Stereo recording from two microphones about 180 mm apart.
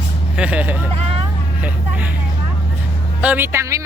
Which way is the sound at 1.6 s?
10° right (ahead or behind).